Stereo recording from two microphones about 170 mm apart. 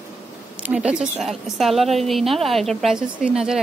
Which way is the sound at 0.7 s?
5° right (ahead or behind).